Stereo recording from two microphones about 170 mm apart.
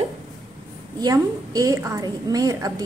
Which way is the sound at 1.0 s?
20° right (ahead or behind).